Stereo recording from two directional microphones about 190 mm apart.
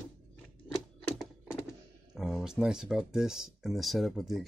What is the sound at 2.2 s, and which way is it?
Speech, centre (ahead or behind).